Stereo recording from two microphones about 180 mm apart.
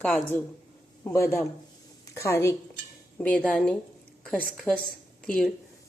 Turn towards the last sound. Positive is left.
turn(degrees=5)  # may be behind; listen again after turning